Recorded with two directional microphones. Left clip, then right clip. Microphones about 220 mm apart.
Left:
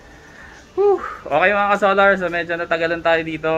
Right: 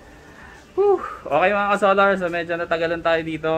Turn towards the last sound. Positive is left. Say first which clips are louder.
# left 3 dB
turn(degrees=0)  # may be behind; listen again after turning